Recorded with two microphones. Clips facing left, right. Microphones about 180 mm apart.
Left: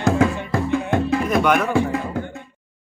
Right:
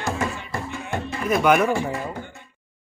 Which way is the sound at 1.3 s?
5° right (ahead or behind).